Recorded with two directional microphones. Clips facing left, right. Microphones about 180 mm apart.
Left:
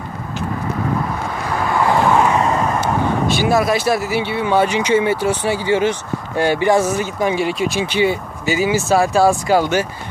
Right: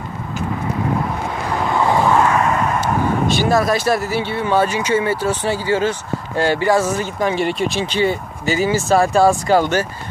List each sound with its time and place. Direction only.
1.7 s vehicle: 20° right (ahead or behind)
2.2 s vehicle: 25° left (ahead or behind)
3.3 s speech: 10° left (ahead or behind)